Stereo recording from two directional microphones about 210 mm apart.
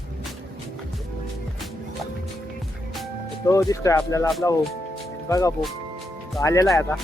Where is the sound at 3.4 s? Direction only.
15° left (ahead or behind).